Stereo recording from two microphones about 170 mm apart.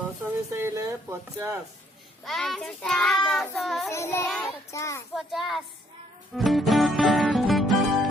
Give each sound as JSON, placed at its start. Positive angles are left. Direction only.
{"t": 0.5, "sound": "speech", "side_deg": -15}
{"t": 2.2, "sound": "a child's voice", "side_deg": 0}
{"t": 3.8, "sound": "child singing", "side_deg": 15}
{"t": 5.1, "sound": "a child's voice", "side_deg": 0}
{"t": 6.3, "sound": "music", "side_deg": 0}